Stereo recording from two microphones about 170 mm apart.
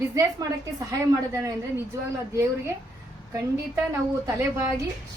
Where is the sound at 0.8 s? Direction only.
20° right (ahead or behind).